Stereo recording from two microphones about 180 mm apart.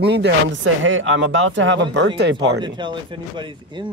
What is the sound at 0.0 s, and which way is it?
Speech, 70° right (ahead or behind).